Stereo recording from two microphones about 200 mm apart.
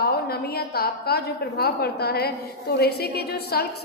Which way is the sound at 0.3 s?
50° left (ahead or behind).